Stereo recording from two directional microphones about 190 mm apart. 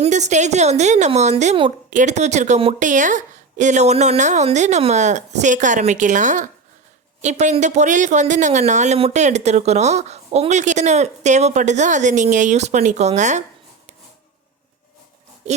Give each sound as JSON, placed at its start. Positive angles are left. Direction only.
{"t": 0.0, "sound": "speech", "side_deg": -35}